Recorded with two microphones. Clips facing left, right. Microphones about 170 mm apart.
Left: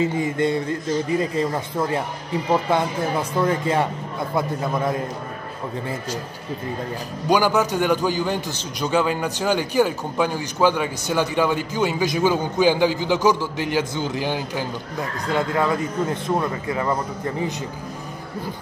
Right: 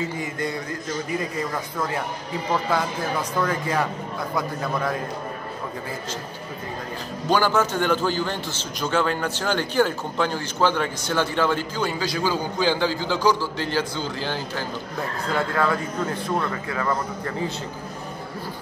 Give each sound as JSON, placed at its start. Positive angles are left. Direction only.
{"t": 0.4, "sound": "a man's voice", "side_deg": 25}
{"t": 7.2, "sound": "a man's voice", "side_deg": 15}